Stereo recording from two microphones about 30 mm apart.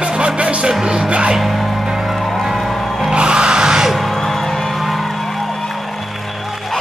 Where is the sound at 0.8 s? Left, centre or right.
Right.